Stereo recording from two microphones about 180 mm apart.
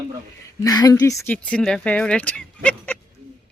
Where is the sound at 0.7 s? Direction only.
20° left (ahead or behind).